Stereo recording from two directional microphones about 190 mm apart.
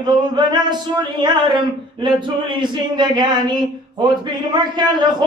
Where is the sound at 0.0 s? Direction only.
25° right (ahead or behind).